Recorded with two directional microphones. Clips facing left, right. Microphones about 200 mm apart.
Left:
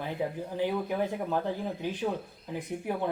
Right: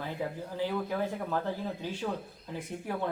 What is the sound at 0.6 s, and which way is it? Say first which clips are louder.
Speech: left 2 dB; 15° left (ahead or behind).